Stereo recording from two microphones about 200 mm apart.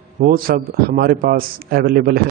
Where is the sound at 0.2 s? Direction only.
50° right (ahead or behind).